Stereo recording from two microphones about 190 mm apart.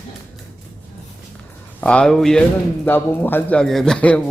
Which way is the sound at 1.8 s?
5° left (ahead or behind).